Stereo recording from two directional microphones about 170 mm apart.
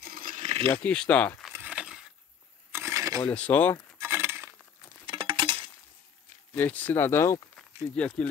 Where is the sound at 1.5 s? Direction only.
10° right (ahead or behind).